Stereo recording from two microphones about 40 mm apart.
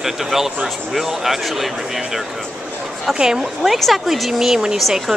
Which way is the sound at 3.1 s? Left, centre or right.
Centre.